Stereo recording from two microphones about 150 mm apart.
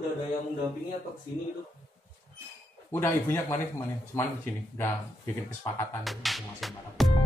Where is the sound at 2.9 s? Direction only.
15° left (ahead or behind).